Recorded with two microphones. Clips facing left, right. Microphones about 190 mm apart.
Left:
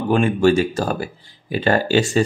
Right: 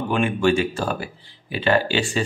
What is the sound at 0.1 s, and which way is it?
Speech, 40° left (ahead or behind).